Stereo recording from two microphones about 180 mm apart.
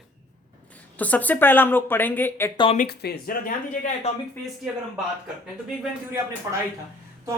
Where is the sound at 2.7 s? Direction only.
60° left (ahead or behind).